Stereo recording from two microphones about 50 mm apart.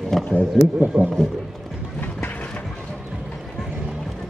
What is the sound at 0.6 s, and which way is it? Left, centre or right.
Speech, centre.